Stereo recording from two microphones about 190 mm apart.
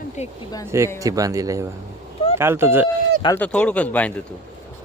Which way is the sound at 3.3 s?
5° left (ahead or behind).